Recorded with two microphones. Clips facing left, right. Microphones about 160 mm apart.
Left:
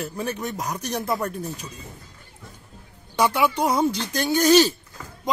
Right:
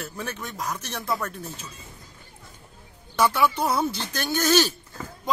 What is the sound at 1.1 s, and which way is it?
Speech, 20° left (ahead or behind).